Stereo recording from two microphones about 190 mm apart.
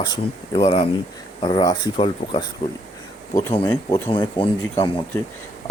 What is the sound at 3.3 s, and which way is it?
Speech, 15° left (ahead or behind).